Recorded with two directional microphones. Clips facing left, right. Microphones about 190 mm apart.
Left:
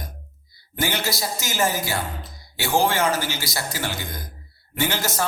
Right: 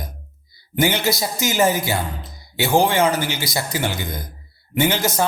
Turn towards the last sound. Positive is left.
turn(degrees=-20)  # may be behind; listen again after turning